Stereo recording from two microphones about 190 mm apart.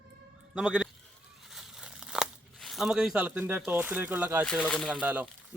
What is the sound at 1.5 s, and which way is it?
Tearing, 5° right (ahead or behind).